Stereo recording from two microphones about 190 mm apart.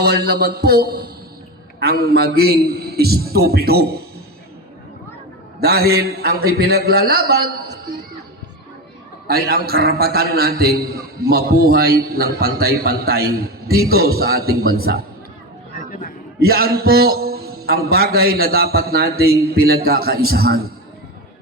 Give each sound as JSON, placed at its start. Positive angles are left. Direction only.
{"t": 0.0, "sound": "a man's voice", "side_deg": -60}
{"t": 5.5, "sound": "a man's voice", "side_deg": -55}
{"t": 9.2, "sound": "a man's voice", "side_deg": -55}
{"t": 15.8, "sound": "a sound", "side_deg": 45}
{"t": 16.4, "sound": "a man's voice", "side_deg": -55}